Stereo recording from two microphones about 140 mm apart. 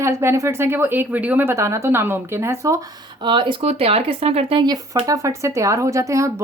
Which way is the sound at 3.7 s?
45° right (ahead or behind).